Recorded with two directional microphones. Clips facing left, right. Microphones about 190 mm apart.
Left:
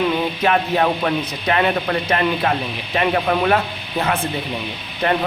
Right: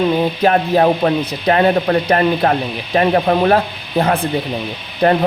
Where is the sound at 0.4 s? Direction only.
35° right (ahead or behind).